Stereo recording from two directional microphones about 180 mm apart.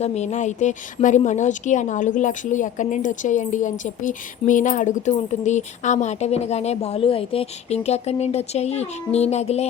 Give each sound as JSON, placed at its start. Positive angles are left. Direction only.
{"t": 0.0, "sound": "a woman's voice", "side_deg": 40}